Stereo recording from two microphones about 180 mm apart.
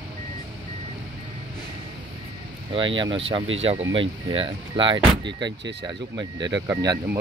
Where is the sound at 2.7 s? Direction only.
25° right (ahead or behind).